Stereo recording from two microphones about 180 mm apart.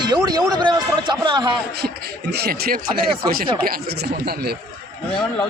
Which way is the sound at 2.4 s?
55° right (ahead or behind).